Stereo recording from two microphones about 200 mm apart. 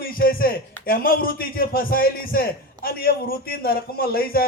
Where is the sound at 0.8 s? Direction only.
45° left (ahead or behind).